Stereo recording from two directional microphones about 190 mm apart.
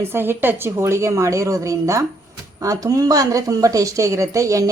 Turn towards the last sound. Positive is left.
turn(degrees=-15)  # may be behind; listen again after turning